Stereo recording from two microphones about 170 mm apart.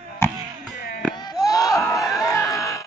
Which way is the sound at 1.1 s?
25° left (ahead or behind).